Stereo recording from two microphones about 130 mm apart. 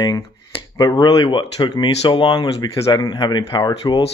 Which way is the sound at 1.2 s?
40° left (ahead or behind).